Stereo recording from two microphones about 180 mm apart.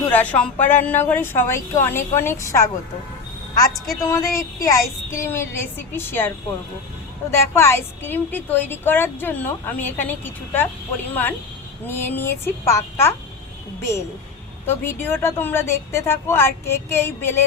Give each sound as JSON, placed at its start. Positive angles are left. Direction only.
{"t": 0.1, "sound": "a woman's voice", "side_deg": 10}
{"t": 4.0, "sound": "a woman's voice", "side_deg": 15}
{"t": 14.7, "sound": "a woman's voice", "side_deg": 10}